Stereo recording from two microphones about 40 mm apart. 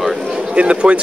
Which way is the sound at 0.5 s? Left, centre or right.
Right.